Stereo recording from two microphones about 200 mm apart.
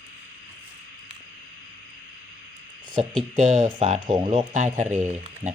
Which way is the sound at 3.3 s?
35° right (ahead or behind).